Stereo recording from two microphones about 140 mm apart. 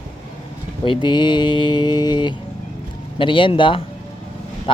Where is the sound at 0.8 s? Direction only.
35° left (ahead or behind).